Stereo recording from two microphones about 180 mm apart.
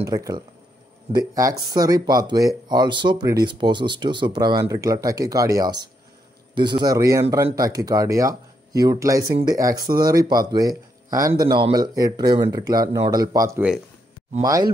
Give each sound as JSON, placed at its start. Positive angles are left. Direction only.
{"t": 0.0, "sound": "speech", "side_deg": -20}